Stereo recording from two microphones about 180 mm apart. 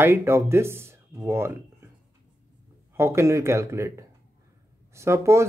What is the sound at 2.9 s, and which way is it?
Speech, 15° right (ahead or behind).